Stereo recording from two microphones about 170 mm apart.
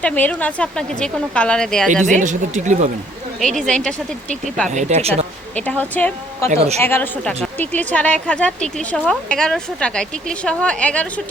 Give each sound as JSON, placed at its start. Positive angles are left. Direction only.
{"t": 0.0, "sound": "a woman's voice", "side_deg": 10}
{"t": 2.1, "sound": "speech", "side_deg": -45}
{"t": 3.4, "sound": "speech", "side_deg": 5}
{"t": 4.7, "sound": "speech", "side_deg": -45}
{"t": 5.5, "sound": "a woman's voice", "side_deg": 10}
{"t": 6.5, "sound": "speech", "side_deg": -40}
{"t": 6.8, "sound": "a woman's voice", "side_deg": 10}